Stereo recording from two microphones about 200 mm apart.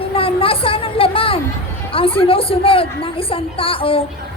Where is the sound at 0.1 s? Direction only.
25° left (ahead or behind).